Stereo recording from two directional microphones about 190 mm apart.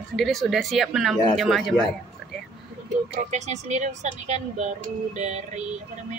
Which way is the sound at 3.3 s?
35° right (ahead or behind).